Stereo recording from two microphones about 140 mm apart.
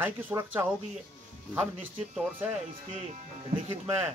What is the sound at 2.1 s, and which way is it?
Speech, 15° right (ahead or behind).